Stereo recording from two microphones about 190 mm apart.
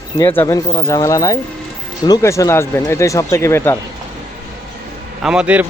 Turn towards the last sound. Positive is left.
turn(degrees=-5)  # may be behind; listen again after turning